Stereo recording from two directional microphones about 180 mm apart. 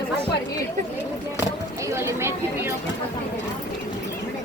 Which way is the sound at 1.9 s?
15° right (ahead or behind).